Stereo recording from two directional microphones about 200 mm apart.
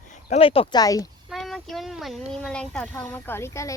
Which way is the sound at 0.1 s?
30° left (ahead or behind).